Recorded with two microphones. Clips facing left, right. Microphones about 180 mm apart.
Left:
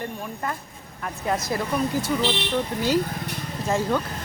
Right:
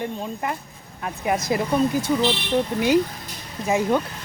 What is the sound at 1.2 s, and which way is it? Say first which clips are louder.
Speech: right 3 dB; 15° right (ahead or behind).